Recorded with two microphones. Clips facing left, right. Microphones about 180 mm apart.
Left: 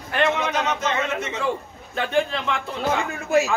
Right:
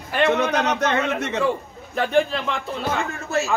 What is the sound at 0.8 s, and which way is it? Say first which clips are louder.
Speech: right 3 dB; 65° right (ahead or behind).